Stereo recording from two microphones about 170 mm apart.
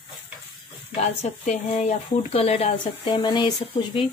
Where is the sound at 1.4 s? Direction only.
40° left (ahead or behind).